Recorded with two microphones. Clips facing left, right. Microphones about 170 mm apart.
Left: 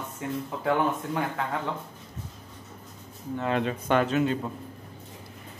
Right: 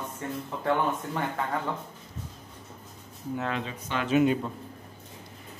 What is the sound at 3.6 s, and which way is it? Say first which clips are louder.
Speech: left 8 dB; 55° left (ahead or behind).